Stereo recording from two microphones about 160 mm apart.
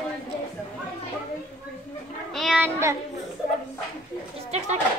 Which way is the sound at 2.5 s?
15° right (ahead or behind).